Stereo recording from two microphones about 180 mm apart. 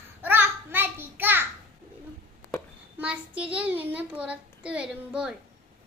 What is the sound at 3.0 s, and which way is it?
A child's voice, 5° right (ahead or behind).